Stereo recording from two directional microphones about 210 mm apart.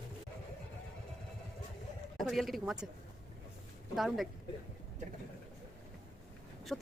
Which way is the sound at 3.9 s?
Centre (ahead or behind).